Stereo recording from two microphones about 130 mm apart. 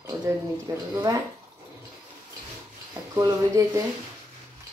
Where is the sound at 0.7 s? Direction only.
30° right (ahead or behind).